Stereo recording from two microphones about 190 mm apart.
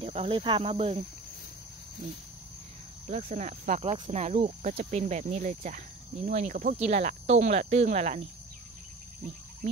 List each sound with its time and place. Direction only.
0.0 s speech: 30° right (ahead or behind)
3.1 s speech: 35° right (ahead or behind)